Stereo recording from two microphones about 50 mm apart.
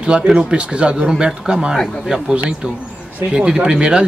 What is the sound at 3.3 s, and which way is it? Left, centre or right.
Speech, centre.